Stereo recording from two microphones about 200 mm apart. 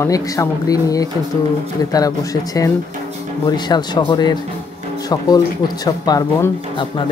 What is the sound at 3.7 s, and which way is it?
Speech, 20° left (ahead or behind).